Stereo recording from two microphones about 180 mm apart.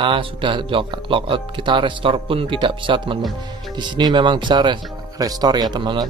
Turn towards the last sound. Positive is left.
turn(degrees=-25)  # may be behind; listen again after turning